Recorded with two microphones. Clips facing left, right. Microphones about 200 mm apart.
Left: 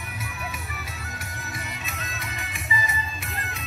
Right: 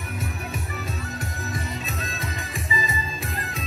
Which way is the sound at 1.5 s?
30° right (ahead or behind).